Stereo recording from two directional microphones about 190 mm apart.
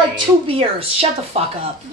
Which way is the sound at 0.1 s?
30° right (ahead or behind).